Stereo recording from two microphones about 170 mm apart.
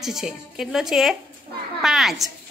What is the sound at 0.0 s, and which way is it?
A woman's voice, centre (ahead or behind).